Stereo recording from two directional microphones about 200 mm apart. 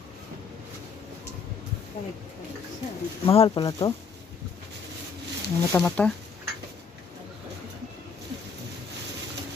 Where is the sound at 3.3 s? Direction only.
25° left (ahead or behind).